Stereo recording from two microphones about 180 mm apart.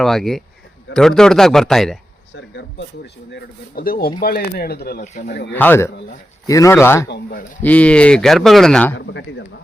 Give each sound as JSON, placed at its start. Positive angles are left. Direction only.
{"t": 0.0, "sound": "speech", "side_deg": 0}
{"t": 2.3, "sound": "speech", "side_deg": 80}
{"t": 3.3, "sound": "speech", "side_deg": 55}
{"t": 5.5, "sound": "speech", "side_deg": 10}
{"t": 7.1, "sound": "speech", "side_deg": 55}
{"t": 7.6, "sound": "speech", "side_deg": 10}
{"t": 9.0, "sound": "speech", "side_deg": 80}